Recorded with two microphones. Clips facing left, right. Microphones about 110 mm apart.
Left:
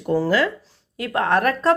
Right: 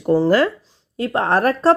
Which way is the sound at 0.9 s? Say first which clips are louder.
Right 2 dB; 30° right (ahead or behind).